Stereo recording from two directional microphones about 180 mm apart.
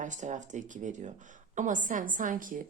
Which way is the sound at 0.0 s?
45° right (ahead or behind).